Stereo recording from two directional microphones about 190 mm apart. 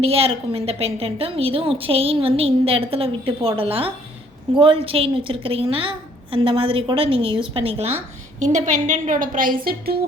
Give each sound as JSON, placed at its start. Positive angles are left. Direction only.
{"t": 0.0, "sound": "a woman's voice", "side_deg": -30}